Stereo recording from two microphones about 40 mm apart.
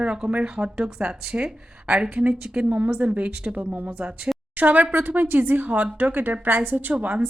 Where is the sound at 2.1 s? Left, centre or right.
Right.